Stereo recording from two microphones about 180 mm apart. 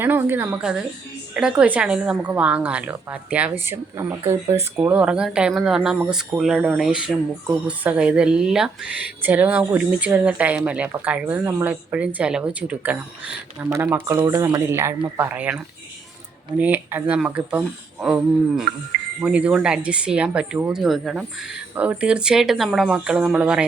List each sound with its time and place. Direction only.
0.0 s speech: 10° right (ahead or behind)